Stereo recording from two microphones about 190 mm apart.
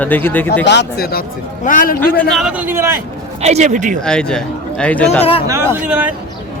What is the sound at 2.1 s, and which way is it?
Speech, centre (ahead or behind).